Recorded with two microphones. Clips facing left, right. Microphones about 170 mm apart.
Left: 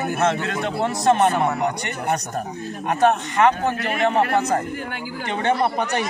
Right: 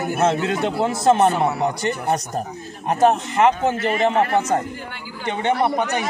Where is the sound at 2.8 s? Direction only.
30° right (ahead or behind).